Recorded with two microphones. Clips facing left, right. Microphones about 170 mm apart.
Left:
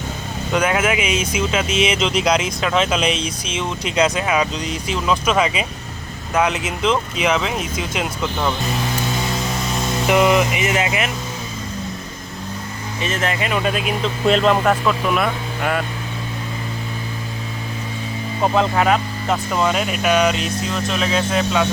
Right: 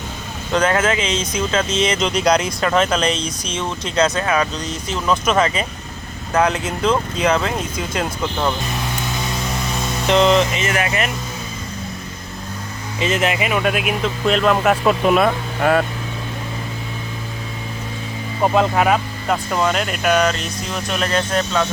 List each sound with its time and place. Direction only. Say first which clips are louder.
0.5 s speech: right 1 dB; 10° left (ahead or behind)
10.1 s speech: right 1 dB; 10° left (ahead or behind)
13.0 s speech: right 3 dB; 15° right (ahead or behind)
14.8 s speech: right 4 dB; 25° right (ahead or behind)
18.4 s speech: right 1 dB; 5° right (ahead or behind)